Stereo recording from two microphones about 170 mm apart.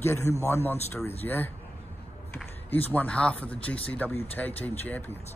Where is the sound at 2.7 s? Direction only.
10° left (ahead or behind).